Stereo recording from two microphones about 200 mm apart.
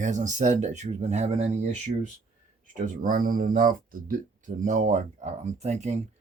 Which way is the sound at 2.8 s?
40° right (ahead or behind).